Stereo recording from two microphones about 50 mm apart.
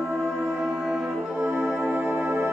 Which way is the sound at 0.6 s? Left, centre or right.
Centre.